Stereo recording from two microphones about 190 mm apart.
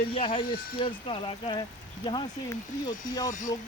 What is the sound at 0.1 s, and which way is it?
Speech, 30° left (ahead or behind).